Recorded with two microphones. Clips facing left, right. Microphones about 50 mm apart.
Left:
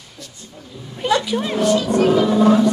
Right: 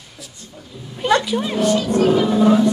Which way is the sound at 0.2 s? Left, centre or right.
Centre.